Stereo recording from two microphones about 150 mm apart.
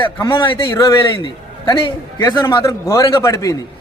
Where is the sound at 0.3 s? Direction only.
35° left (ahead or behind).